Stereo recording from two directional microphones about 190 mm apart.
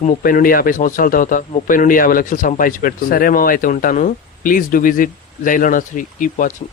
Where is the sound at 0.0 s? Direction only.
45° left (ahead or behind).